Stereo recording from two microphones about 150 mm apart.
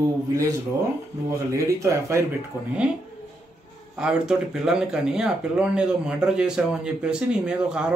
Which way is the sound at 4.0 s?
5° right (ahead or behind).